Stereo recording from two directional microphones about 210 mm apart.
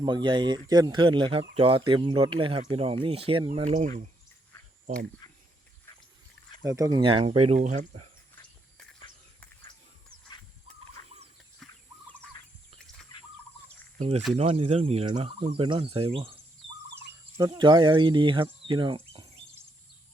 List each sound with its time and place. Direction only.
0.0 s speech: 20° right (ahead or behind)
5.2 s a sound: 20° left (ahead or behind)
6.6 s speech: 15° right (ahead or behind); by 8.0 s 35° right (ahead or behind)
11.6 s fowl: centre (ahead or behind)
12.2 s bird: 5° left (ahead or behind)
14.3 s speech: 25° right (ahead or behind)
17.3 s speech: 20° right (ahead or behind)